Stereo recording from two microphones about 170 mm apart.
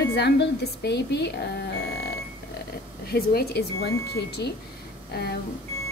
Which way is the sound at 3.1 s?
65° left (ahead or behind).